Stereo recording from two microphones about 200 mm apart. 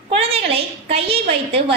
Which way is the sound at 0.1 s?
30° right (ahead or behind).